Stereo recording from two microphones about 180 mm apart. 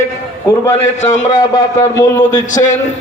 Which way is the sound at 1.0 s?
40° left (ahead or behind).